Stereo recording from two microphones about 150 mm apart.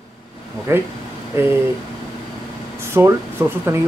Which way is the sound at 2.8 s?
15° right (ahead or behind).